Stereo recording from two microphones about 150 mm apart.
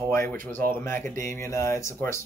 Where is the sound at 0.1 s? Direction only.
15° left (ahead or behind).